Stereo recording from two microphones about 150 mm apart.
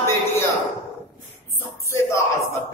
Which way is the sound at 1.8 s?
20° left (ahead or behind).